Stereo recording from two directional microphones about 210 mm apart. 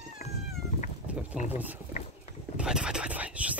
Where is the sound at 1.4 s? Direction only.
40° left (ahead or behind).